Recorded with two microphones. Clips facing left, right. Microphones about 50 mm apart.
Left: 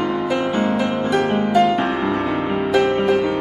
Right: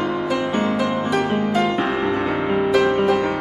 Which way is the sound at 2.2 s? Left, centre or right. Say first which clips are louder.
Even; right.